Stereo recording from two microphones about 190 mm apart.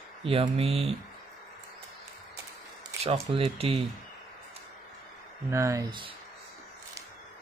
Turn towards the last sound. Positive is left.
turn(degrees=-25)  # may be behind; listen again after turning